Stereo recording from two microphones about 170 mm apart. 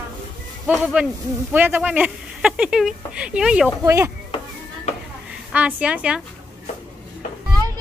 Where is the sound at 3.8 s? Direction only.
15° right (ahead or behind).